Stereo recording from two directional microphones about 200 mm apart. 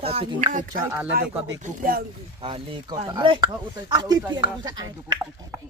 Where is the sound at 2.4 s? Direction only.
25° right (ahead or behind).